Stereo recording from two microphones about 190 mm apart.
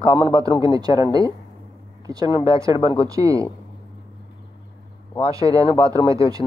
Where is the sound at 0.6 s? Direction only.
20° right (ahead or behind).